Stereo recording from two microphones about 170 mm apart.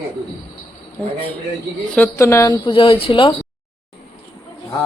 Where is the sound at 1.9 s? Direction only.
15° left (ahead or behind); by 3.4 s 30° left (ahead or behind).